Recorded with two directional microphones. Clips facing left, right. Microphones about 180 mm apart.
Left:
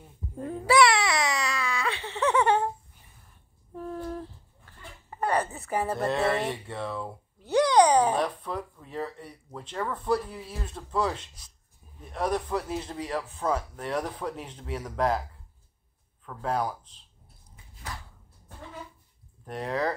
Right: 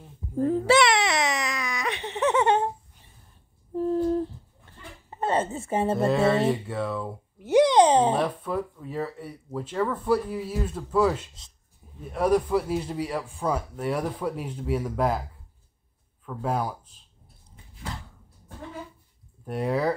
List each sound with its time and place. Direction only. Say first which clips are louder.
0.4 s baby cry: right 2 dB; 25° right (ahead or behind)
3.7 s humming: right 11 dB; 30° right (ahead or behind)
4.6 s goat: right 1 dB; 25° right (ahead or behind)
6.5 s speech: right 5 dB; centre (ahead or behind)
7.3 s a sound: right 3 dB; 15° right (ahead or behind)
8.2 s speech: right 3 dB; 5° right (ahead or behind)
16.3 s speech: right 1 dB; 10° right (ahead or behind)
19.4 s speech: right 4 dB; 10° right (ahead or behind)